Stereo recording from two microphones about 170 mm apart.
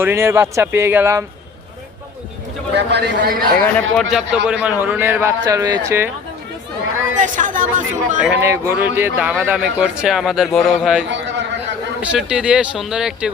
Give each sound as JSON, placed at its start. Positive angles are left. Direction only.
{"t": 0.0, "sound": "a man's voice", "side_deg": -15}
{"t": 2.7, "sound": "a man's voice", "side_deg": -85}
{"t": 3.6, "sound": "a man's voice", "side_deg": 5}
{"t": 7.2, "sound": "speech", "side_deg": -50}
{"t": 8.4, "sound": "speech", "side_deg": -15}
{"t": 11.1, "sound": "a sound", "side_deg": -90}
{"t": 12.1, "sound": "speech", "side_deg": -5}